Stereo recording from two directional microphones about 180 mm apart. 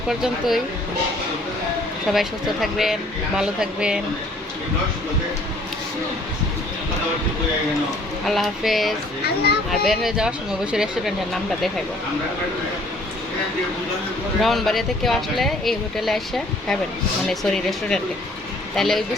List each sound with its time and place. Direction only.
0.1 s speech: centre (ahead or behind)
2.0 s speech: centre (ahead or behind)
8.3 s speech: centre (ahead or behind)
9.2 s speech: 60° left (ahead or behind)
9.8 s speech: centre (ahead or behind)
14.4 s speech: centre (ahead or behind)
17.2 s speech: centre (ahead or behind)